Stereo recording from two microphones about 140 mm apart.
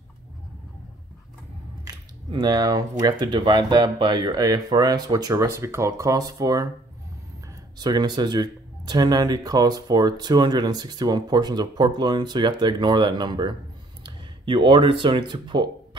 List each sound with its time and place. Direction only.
2.3 s speech: 30° right (ahead or behind)
7.8 s speech: 30° right (ahead or behind)